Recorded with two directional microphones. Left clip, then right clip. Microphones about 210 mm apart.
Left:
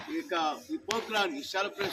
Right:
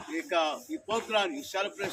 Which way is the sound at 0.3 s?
20° right (ahead or behind).